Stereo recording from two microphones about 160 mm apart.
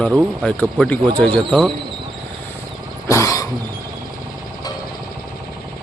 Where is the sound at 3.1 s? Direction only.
20° left (ahead or behind).